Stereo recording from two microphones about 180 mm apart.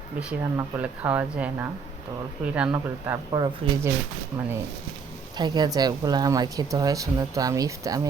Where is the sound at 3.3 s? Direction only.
20° right (ahead or behind).